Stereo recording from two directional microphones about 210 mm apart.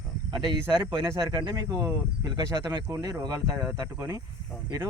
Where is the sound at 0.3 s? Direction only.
20° right (ahead or behind).